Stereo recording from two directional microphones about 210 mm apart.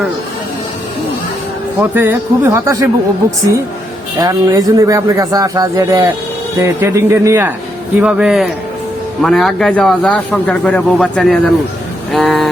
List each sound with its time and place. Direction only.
1.8 s a man's voice: 10° right (ahead or behind)
4.2 s a man's voice: 15° right (ahead or behind); by 12.5 s centre (ahead or behind)